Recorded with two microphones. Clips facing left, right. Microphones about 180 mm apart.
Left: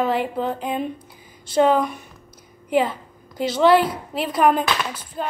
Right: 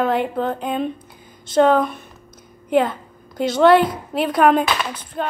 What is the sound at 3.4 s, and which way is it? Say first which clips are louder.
Speech: right 3 dB; centre (ahead or behind).